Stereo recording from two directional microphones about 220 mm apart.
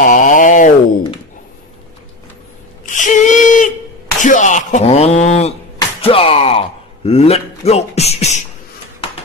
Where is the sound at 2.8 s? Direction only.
35° left (ahead or behind).